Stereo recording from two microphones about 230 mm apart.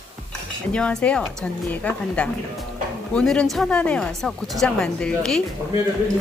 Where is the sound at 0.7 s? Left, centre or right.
Centre.